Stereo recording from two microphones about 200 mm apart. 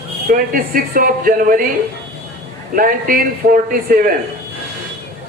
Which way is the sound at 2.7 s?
45° right (ahead or behind).